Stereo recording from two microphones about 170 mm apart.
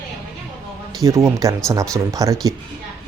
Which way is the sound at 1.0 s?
15° right (ahead or behind).